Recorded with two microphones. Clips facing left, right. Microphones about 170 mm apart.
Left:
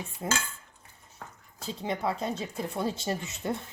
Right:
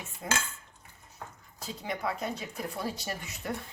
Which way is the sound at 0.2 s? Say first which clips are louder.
Left 2 dB; 25° left (ahead or behind).